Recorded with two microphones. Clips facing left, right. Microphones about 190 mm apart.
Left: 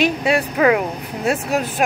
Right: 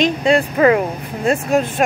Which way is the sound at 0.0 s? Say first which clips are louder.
Right 3 dB; 5° left (ahead or behind).